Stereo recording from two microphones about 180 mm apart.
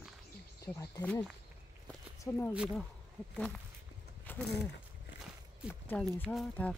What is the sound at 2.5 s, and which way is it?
Speech, 5° right (ahead or behind).